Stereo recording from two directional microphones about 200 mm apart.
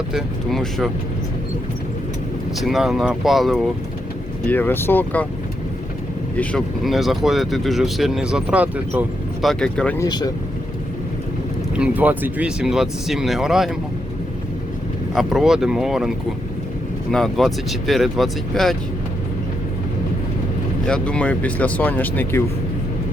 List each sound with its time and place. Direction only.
0.1 s speech: centre (ahead or behind)
2.6 s speech: centre (ahead or behind)
6.3 s speech: 5° left (ahead or behind)
10.0 s speech: 20° left (ahead or behind)
11.7 s speech: 5° right (ahead or behind)
15.1 s speech: centre (ahead or behind)
20.8 s speech: 5° left (ahead or behind)